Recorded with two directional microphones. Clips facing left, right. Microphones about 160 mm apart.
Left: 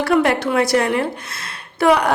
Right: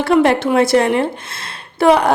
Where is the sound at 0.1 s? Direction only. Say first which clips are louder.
Right 5 dB; 25° right (ahead or behind).